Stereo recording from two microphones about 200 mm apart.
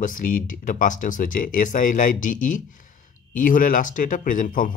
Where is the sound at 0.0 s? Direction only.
45° left (ahead or behind).